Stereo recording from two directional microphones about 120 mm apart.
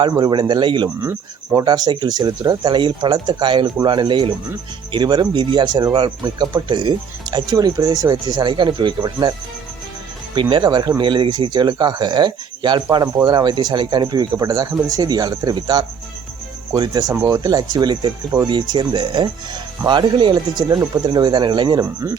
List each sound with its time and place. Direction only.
0.0 s a man's voice: 40° right (ahead or behind)
10.5 s a man's voice: 35° right (ahead or behind)